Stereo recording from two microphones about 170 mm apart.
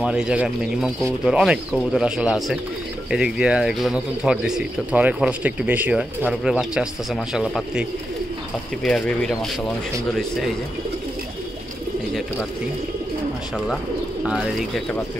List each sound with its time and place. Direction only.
0.0 s speech: 5° right (ahead or behind)
8.8 s speech: 5° left (ahead or behind)
14.2 s speech: centre (ahead or behind)